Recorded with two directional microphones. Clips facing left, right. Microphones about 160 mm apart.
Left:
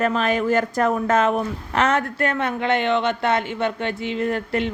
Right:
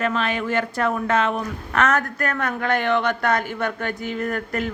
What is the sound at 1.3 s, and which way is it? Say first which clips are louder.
A woman's voice: left 1 dB; 30° left (ahead or behind).